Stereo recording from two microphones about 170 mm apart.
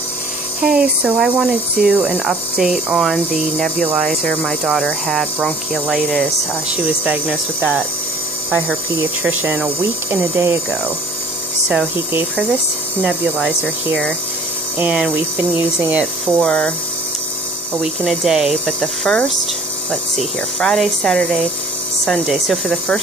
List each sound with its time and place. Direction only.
0.7 s speech: 5° right (ahead or behind)
8.9 s speech: 10° right (ahead or behind)
11.7 s speech: 10° right (ahead or behind)
14.8 s speech: 5° right (ahead or behind)
17.8 s speech: centre (ahead or behind)